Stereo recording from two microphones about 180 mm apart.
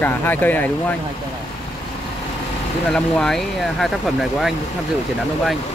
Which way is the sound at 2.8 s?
5° left (ahead or behind).